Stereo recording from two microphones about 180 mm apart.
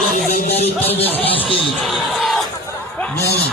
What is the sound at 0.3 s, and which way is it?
Music, 60° left (ahead or behind).